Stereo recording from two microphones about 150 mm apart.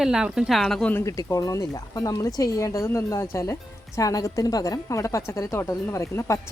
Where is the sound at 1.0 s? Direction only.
20° left (ahead or behind).